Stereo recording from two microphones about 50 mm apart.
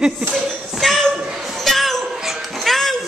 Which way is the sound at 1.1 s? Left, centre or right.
Centre.